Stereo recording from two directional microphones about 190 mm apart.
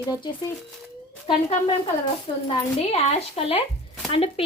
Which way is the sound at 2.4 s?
30° left (ahead or behind).